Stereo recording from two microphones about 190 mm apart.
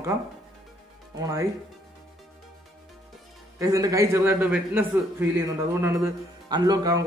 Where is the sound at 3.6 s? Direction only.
15° right (ahead or behind).